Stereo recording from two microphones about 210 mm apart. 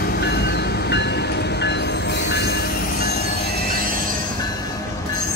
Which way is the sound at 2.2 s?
50° left (ahead or behind).